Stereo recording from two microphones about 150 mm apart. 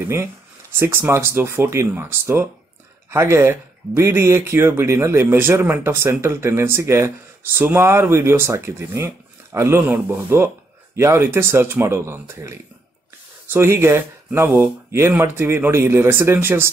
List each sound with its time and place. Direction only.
0.7 s speech: 15° right (ahead or behind)